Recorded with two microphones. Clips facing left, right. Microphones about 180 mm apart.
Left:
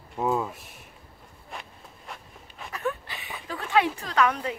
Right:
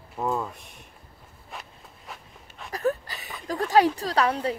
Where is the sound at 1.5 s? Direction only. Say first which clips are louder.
Left 1 dB; centre (ahead or behind).